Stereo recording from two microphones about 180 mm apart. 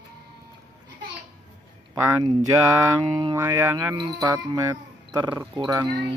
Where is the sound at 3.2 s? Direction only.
20° right (ahead or behind).